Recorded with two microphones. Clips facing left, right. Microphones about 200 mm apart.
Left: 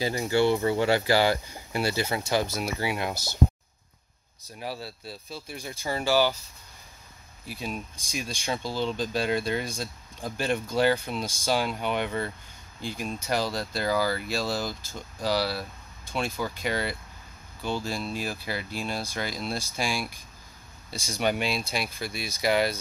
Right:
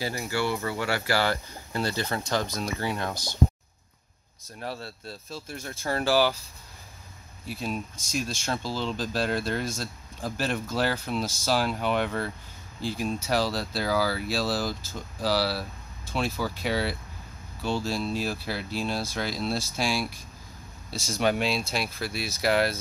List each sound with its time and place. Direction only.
0.0 s speech: 20° left (ahead or behind)
4.6 s speech: 5° left (ahead or behind)
7.4 s speech: centre (ahead or behind)